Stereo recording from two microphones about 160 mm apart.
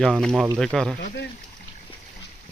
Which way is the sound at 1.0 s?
90° left.